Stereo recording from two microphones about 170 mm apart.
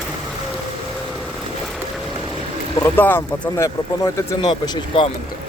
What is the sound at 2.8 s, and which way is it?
Speech, 10° left (ahead or behind).